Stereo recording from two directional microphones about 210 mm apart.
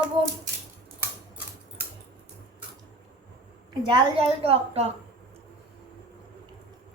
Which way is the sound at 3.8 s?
25° right (ahead or behind).